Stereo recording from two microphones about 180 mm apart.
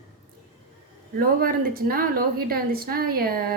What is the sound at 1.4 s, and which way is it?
A woman's voice, 55° right (ahead or behind).